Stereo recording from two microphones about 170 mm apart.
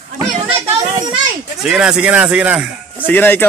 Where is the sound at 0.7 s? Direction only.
20° right (ahead or behind).